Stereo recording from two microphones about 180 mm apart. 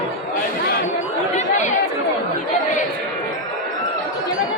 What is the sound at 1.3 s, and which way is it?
Chatter, 40° left (ahead or behind).